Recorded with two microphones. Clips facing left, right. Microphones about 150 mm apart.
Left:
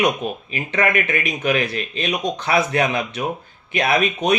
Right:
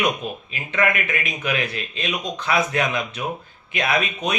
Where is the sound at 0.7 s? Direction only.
40° left (ahead or behind).